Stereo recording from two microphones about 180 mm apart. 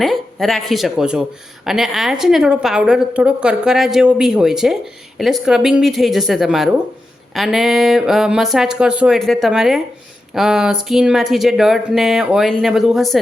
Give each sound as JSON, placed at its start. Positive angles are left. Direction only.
{"t": 0.0, "sound": "a woman's voice", "side_deg": 0}